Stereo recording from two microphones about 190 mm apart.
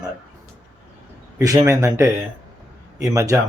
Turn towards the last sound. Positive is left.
turn(degrees=-15)  # may be behind; listen again after turning